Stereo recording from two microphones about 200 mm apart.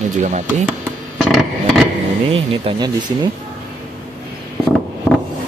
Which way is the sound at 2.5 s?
25° right (ahead or behind).